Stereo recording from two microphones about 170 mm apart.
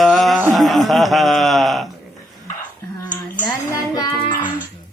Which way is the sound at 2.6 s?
15° left (ahead or behind).